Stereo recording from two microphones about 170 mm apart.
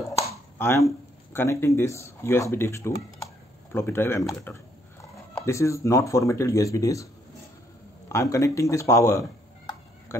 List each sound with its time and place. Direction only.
0.3 s speech: 15° left (ahead or behind)
8.1 s speech: 20° left (ahead or behind)